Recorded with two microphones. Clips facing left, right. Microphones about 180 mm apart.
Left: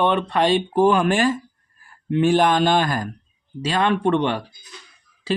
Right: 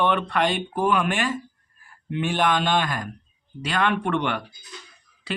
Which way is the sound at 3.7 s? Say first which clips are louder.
Left 4 dB; 25° left (ahead or behind).